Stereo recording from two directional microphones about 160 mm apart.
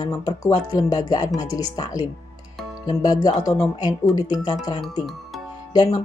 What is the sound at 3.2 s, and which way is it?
Speech, 25° left (ahead or behind).